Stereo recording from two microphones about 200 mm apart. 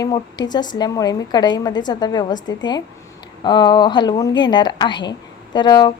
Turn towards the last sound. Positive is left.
turn(degrees=20)  # may be behind; listen again after turning